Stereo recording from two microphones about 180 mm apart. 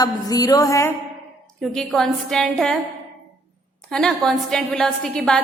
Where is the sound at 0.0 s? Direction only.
20° left (ahead or behind).